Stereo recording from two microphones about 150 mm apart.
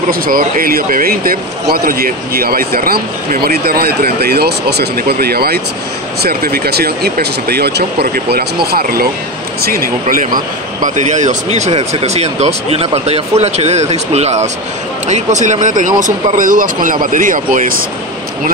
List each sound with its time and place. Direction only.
0.1 s speech: 70° right (ahead or behind)